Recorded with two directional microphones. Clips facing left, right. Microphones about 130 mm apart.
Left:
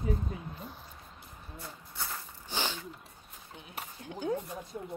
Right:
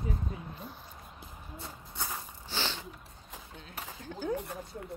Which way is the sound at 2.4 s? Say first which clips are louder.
Left 1 dB; 15° left (ahead or behind).